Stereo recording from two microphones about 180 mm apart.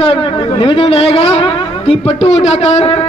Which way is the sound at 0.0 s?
30° left (ahead or behind).